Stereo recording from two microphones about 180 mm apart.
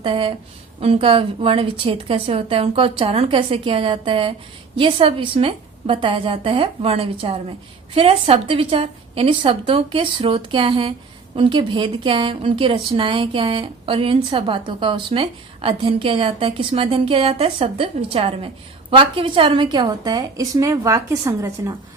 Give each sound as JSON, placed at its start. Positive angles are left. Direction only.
{"t": 0.0, "sound": "a woman's voice", "side_deg": -30}